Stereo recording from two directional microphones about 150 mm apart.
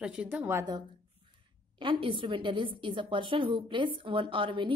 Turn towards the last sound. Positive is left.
turn(degrees=-35)  # may be behind; listen again after turning